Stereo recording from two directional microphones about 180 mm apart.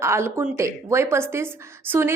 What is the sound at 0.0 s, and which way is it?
A woman's voice, 15° right (ahead or behind).